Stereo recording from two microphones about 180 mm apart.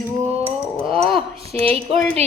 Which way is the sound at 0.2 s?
35° right (ahead or behind).